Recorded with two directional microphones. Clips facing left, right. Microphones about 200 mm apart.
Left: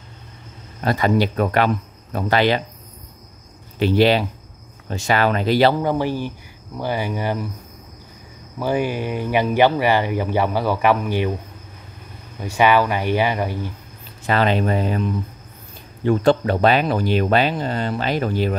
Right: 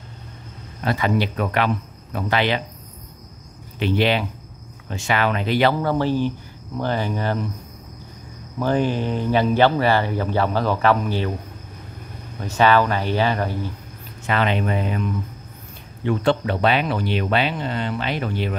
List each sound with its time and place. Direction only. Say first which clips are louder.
0.8 s speech: left 3 dB; 40° left (ahead or behind)
3.8 s speech: left 4 dB; 35° left (ahead or behind)
5.8 s speech: right 1 dB; 15° left (ahead or behind)
8.5 s speech: right 1 dB; 10° left (ahead or behind)
12.4 s speech: left 1 dB; 15° left (ahead or behind)
14.2 s speech: left 3 dB; 35° left (ahead or behind)